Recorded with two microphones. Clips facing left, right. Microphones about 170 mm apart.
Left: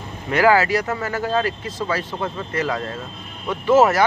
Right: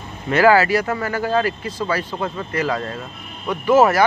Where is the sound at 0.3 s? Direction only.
20° left (ahead or behind).